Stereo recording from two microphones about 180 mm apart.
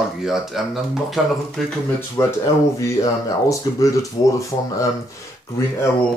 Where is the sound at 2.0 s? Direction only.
15° left (ahead or behind).